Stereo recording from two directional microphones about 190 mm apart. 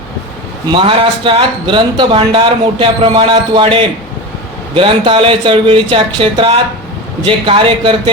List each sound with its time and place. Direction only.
0.7 s a man's voice: 25° right (ahead or behind)